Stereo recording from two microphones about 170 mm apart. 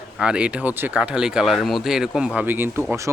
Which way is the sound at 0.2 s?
5° right (ahead or behind).